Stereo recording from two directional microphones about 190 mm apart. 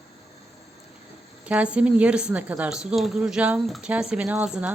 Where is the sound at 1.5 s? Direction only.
5° right (ahead or behind).